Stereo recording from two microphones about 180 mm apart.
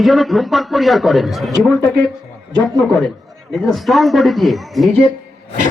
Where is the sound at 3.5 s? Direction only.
Centre (ahead or behind).